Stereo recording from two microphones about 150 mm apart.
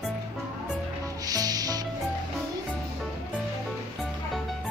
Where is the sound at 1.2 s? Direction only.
25° right (ahead or behind).